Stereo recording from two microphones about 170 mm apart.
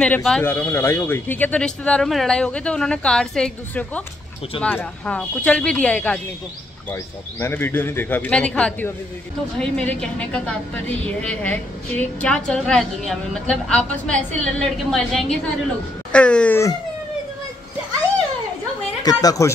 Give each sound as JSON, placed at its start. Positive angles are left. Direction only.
{"t": 0.0, "sound": "a woman's voice", "side_deg": 5}
{"t": 19.0, "sound": "a woman's voice", "side_deg": 20}